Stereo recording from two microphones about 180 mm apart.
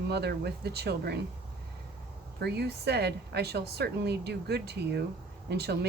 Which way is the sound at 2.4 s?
65° right (ahead or behind).